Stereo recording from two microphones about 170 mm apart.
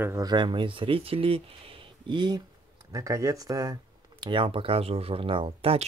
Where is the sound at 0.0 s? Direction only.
20° right (ahead or behind).